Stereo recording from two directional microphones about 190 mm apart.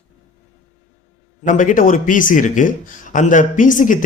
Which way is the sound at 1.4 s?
45° left (ahead or behind).